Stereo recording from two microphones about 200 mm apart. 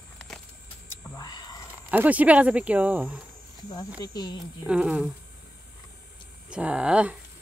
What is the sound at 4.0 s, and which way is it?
Speech, 20° left (ahead or behind).